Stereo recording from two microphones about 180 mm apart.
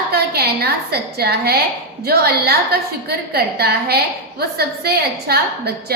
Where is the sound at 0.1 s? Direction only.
60° right (ahead or behind).